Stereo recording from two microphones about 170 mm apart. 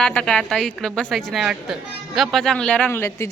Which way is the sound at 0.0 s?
5° left (ahead or behind).